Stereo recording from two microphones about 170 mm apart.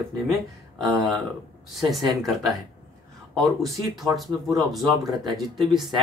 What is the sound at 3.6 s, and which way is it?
Speech, centre (ahead or behind).